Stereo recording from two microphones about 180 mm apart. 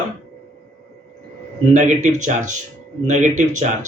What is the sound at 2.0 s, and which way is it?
Speech, 45° right (ahead or behind).